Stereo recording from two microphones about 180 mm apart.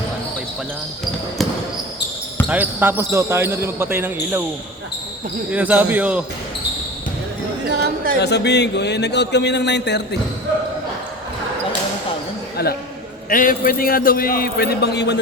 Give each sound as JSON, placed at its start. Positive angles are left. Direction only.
{"t": 2.5, "sound": "speech", "side_deg": -10}
{"t": 5.5, "sound": "speech", "side_deg": -10}
{"t": 7.7, "sound": "speech", "side_deg": -60}
{"t": 8.2, "sound": "speech", "side_deg": 70}
{"t": 12.6, "sound": "speech", "side_deg": 60}
{"t": 13.3, "sound": "a man's voice", "side_deg": 50}